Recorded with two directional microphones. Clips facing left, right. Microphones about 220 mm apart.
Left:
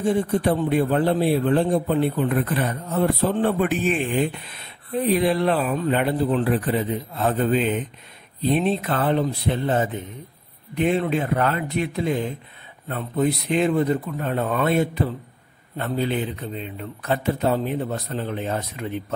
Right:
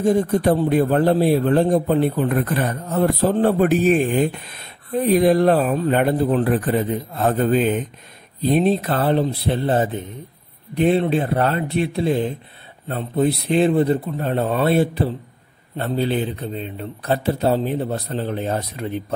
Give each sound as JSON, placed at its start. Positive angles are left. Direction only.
{"t": 0.0, "sound": "a man's voice", "side_deg": -40}